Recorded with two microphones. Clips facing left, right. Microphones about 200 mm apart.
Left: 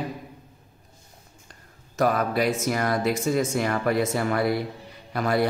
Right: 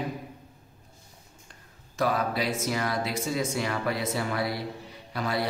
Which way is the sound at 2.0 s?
50° left (ahead or behind).